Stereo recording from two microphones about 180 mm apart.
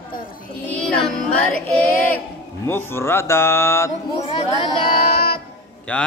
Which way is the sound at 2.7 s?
10° left (ahead or behind).